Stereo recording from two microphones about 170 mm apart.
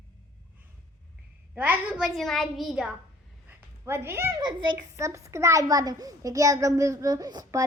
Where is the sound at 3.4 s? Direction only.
15° right (ahead or behind).